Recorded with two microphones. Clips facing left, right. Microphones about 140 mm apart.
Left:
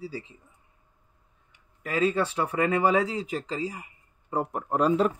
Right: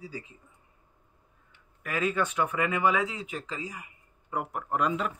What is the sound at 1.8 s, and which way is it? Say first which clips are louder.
Speech: left 4 dB; 30° left (ahead or behind).